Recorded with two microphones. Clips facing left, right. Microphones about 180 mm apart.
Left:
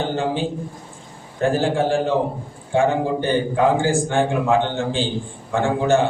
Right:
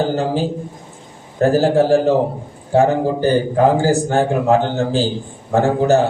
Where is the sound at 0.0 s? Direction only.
40° right (ahead or behind).